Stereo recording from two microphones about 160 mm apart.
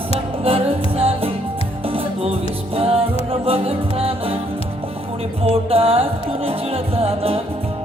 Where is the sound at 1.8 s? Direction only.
35° right (ahead or behind).